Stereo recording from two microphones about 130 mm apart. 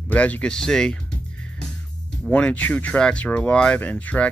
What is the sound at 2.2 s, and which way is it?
Speech, 10° left (ahead or behind).